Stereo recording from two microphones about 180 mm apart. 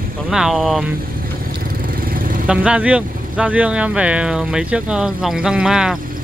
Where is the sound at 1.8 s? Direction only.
55° right (ahead or behind).